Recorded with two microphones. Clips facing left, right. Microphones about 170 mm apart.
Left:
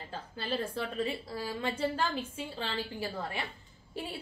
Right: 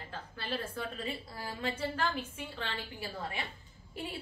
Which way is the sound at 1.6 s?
30° left (ahead or behind).